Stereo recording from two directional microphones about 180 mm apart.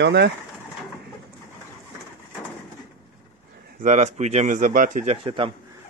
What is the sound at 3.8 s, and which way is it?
A man's voice, 40° right (ahead or behind).